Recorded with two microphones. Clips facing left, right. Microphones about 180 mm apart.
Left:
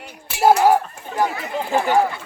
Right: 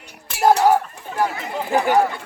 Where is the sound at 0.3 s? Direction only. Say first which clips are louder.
Left 1 dB; 5° left (ahead or behind).